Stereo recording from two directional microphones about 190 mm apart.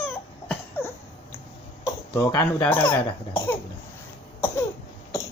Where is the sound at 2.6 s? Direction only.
5° left (ahead or behind).